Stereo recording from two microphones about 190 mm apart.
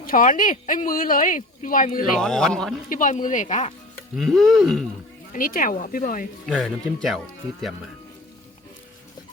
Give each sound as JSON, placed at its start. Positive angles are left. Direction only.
{"t": 0.0, "sound": "speech", "side_deg": 45}
{"t": 2.1, "sound": "speech", "side_deg": 0}
{"t": 2.9, "sound": "speech", "side_deg": 40}
{"t": 4.1, "sound": "speech", "side_deg": 0}
{"t": 5.3, "sound": "speech", "side_deg": 45}
{"t": 6.4, "sound": "speech", "side_deg": 0}